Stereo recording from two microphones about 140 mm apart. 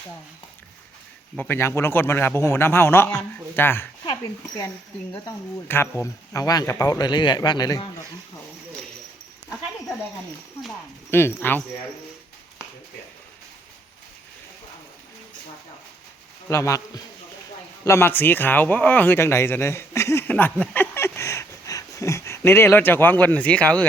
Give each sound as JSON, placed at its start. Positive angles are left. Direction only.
{"t": 1.4, "sound": "a man's voice", "side_deg": 15}
{"t": 5.6, "sound": "speech", "side_deg": 15}
{"t": 11.1, "sound": "a man's voice", "side_deg": 15}
{"t": 16.5, "sound": "speech", "side_deg": 20}